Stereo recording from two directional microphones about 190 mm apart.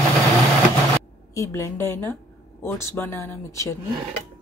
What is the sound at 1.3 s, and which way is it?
A woman's voice, 15° left (ahead or behind).